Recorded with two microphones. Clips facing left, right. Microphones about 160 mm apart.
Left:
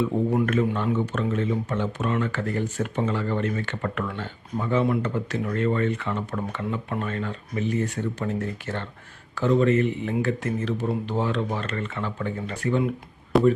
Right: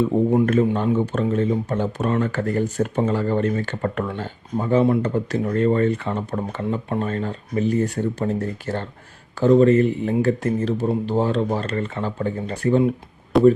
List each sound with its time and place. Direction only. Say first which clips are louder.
0.4 s speech: right 5 dB; 35° right (ahead or behind)
13.3 s speech: right 5 dB; centre (ahead or behind)